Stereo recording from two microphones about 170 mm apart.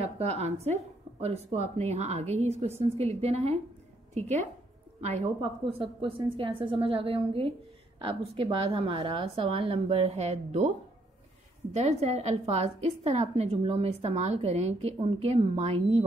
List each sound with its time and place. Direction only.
0.0 s a woman's voice: 40° right (ahead or behind)
11.7 s a woman's voice: 40° right (ahead or behind)